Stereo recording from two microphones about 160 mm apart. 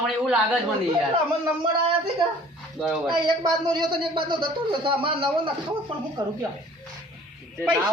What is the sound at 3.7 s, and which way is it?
Speech, 30° right (ahead or behind).